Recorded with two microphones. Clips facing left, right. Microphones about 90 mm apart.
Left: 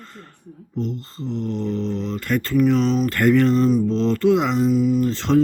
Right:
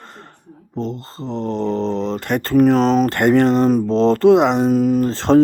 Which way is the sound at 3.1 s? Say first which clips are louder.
Right 3 dB; 30° right (ahead or behind).